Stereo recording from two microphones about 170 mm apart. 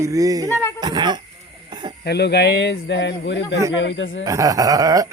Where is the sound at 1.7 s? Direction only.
25° right (ahead or behind).